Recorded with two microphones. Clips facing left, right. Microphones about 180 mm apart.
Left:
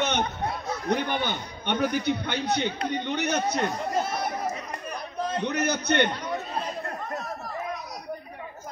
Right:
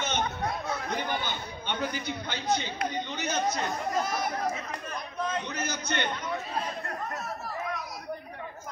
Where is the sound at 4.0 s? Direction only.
30° left (ahead or behind).